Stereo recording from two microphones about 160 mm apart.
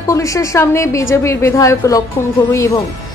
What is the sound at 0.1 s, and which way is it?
A woman's voice, 20° left (ahead or behind).